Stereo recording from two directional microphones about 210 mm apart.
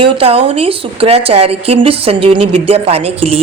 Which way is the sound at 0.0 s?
25° right (ahead or behind).